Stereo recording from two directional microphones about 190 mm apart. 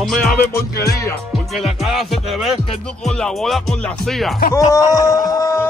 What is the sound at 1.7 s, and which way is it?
Speech, centre (ahead or behind).